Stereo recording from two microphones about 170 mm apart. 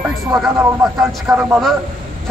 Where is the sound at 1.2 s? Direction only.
15° right (ahead or behind).